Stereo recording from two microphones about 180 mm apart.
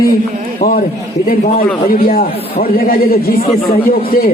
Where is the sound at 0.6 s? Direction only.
55° left (ahead or behind).